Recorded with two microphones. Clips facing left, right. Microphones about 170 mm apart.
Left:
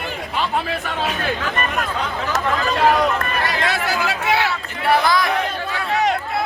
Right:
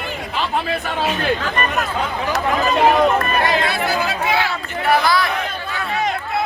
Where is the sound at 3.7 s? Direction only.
90° left; by 4.5 s 75° left (ahead or behind).